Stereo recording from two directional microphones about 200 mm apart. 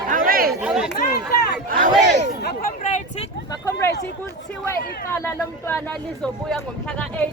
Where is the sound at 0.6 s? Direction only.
5° right (ahead or behind).